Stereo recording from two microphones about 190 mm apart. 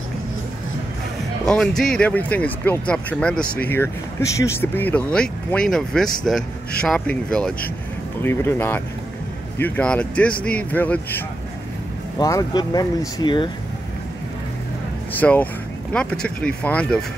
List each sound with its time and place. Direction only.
1.4 s speech: 5° left (ahead or behind); by 13.5 s 25° left (ahead or behind)
15.1 s speech: 10° left (ahead or behind)